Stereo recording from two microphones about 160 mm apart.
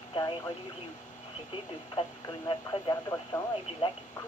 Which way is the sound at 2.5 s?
25° left (ahead or behind).